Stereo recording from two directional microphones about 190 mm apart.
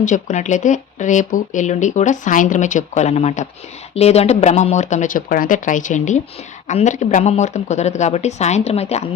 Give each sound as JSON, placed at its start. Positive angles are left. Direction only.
{"t": 0.0, "sound": "speech", "side_deg": 40}